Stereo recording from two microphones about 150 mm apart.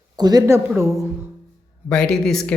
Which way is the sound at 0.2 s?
25° right (ahead or behind).